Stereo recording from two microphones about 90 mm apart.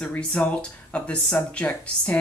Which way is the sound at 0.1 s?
15° left (ahead or behind).